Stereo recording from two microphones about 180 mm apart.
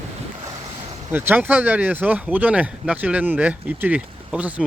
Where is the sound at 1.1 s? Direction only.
10° right (ahead or behind).